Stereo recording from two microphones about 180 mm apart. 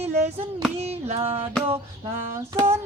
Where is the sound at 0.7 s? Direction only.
35° right (ahead or behind).